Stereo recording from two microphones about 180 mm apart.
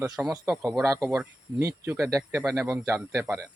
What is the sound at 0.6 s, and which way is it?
Speech, 15° right (ahead or behind).